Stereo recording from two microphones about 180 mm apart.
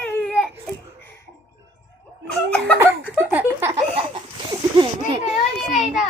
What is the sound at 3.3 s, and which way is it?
Giggle, 10° right (ahead or behind).